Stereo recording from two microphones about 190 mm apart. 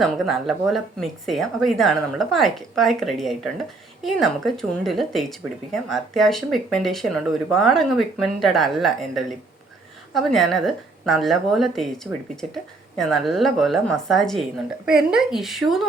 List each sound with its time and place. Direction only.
0.0 s speech: centre (ahead or behind)
13.0 s speech: centre (ahead or behind)